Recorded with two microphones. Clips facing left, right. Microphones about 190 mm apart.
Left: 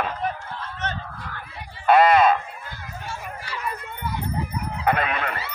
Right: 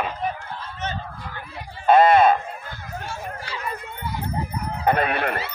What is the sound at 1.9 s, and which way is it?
Speech, 25° right (ahead or behind).